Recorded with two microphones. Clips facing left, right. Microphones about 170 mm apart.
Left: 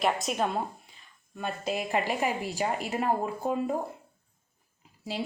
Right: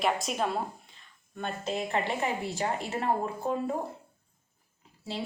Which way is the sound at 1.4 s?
10° left (ahead or behind).